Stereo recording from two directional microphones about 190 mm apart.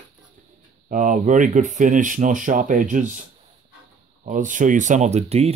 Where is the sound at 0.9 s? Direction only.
40° right (ahead or behind).